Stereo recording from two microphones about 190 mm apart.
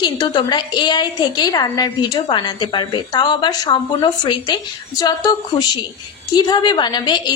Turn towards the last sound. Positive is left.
turn(degrees=25)  # may be behind; listen again after turning